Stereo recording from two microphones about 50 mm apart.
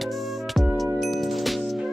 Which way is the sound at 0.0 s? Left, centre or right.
Centre.